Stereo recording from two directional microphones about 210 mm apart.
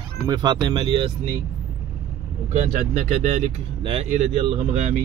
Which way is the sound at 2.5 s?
35° right (ahead or behind).